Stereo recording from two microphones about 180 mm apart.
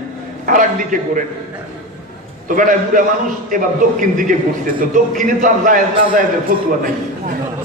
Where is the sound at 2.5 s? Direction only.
45° right (ahead or behind).